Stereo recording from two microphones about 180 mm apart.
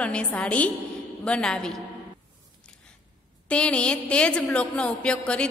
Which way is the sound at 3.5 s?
5° left (ahead or behind).